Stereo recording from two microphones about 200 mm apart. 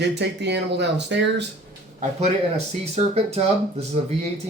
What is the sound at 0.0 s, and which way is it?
Speech, 60° right (ahead or behind).